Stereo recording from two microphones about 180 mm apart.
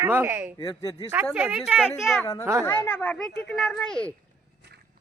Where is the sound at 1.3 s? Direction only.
10° right (ahead or behind).